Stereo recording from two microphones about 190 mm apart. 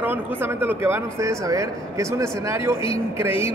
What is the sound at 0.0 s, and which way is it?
Speech, 10° right (ahead or behind).